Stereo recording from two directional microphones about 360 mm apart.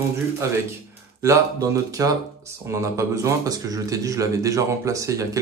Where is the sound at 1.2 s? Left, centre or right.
Centre.